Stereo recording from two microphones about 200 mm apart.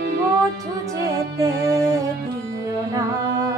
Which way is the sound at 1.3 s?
15° right (ahead or behind).